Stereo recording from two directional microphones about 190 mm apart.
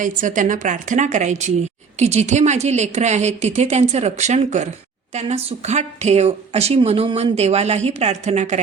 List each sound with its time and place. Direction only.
0.2 s speech: 45° right (ahead or behind)